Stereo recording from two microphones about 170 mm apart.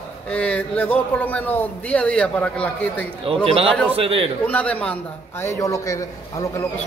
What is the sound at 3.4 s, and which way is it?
Speech, 35° right (ahead or behind).